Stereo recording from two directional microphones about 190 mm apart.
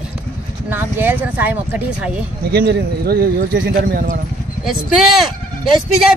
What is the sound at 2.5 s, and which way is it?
Speech, 60° right (ahead or behind).